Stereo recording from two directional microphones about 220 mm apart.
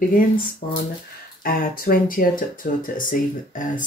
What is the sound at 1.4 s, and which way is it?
Speech, 40° left (ahead or behind).